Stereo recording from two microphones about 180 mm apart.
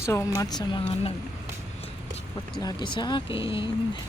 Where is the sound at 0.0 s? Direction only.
15° left (ahead or behind).